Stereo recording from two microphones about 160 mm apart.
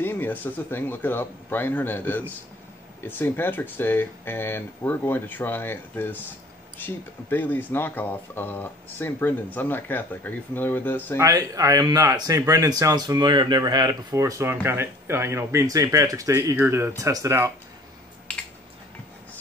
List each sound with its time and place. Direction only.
0.0 s speech: 15° left (ahead or behind)
11.1 s speech: 20° right (ahead or behind)